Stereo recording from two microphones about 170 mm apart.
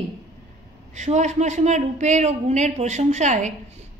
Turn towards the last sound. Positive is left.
turn(degrees=-45)  # may be behind; listen again after turning